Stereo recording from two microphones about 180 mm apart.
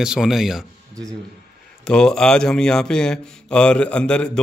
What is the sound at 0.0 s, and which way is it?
Speech, 5° right (ahead or behind).